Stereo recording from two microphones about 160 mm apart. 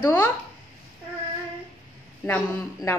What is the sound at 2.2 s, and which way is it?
Speech, 10° left (ahead or behind).